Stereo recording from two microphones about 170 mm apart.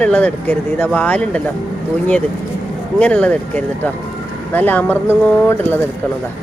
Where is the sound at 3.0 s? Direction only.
5° left (ahead or behind).